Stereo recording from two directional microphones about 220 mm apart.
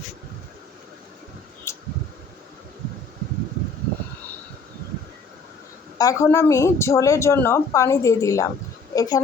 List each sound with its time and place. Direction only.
1.7 s mechanical fan: 10° left (ahead or behind)
6.0 s speech: 15° left (ahead or behind)